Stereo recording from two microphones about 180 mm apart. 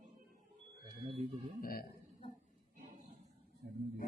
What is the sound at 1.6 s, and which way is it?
Speech, 55° left (ahead or behind).